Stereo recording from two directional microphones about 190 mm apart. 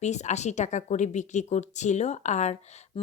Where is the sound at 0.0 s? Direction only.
35° left (ahead or behind).